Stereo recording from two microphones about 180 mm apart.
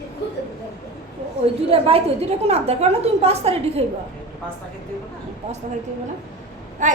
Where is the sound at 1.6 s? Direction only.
35° right (ahead or behind).